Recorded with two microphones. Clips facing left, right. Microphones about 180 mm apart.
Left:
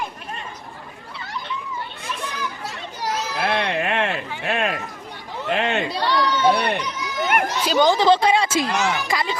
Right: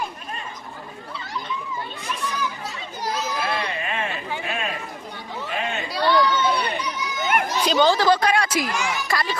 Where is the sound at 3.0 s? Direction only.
70° left (ahead or behind).